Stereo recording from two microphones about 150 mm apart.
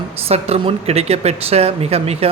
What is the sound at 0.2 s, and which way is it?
Speech, 40° right (ahead or behind).